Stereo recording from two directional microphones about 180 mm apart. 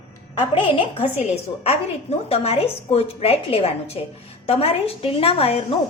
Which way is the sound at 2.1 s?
35° left (ahead or behind).